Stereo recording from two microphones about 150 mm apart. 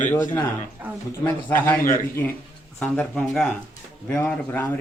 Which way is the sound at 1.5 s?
15° left (ahead or behind).